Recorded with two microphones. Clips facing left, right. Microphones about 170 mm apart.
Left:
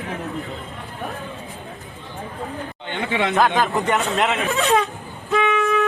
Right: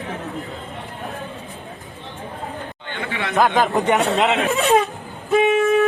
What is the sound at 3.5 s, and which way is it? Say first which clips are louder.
Speech: right 2 dB; 20° right (ahead or behind).